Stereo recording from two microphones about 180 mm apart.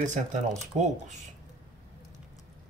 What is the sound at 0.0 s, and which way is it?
Speech, 45° right (ahead or behind).